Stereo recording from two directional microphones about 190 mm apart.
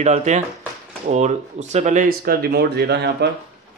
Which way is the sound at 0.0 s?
35° right (ahead or behind).